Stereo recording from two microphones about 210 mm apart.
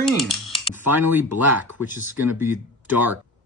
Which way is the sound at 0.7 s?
10° right (ahead or behind).